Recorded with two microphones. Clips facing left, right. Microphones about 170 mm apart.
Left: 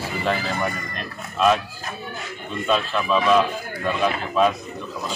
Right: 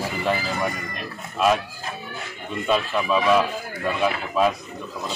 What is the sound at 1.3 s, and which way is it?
Speech, 5° right (ahead or behind).